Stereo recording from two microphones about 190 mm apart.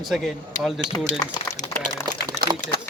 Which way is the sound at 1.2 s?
20° left (ahead or behind).